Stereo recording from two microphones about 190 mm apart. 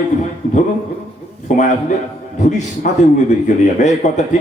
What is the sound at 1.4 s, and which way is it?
A man's voice, 40° left (ahead or behind).